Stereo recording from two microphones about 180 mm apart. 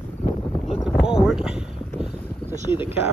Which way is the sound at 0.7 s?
Centre (ahead or behind).